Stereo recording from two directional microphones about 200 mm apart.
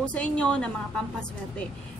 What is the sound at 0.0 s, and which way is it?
A woman's voice, 5° left (ahead or behind).